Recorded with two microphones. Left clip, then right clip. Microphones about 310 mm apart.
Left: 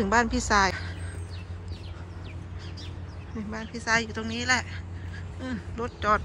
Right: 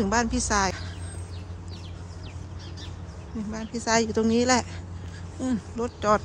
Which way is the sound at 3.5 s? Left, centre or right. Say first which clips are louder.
Right 1 dB; centre.